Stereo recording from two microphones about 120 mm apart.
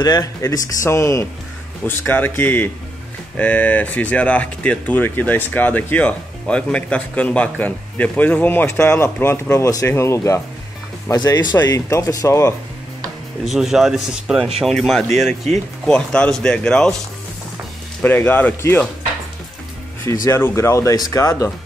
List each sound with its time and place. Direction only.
0.2 s speech: 25° left (ahead or behind)
13.5 s speech: 5° right (ahead or behind)
18.0 s speech: 15° left (ahead or behind)
20.1 s speech: 20° left (ahead or behind)